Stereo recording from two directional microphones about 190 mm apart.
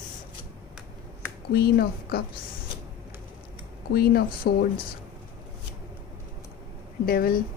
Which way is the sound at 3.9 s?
55° left (ahead or behind).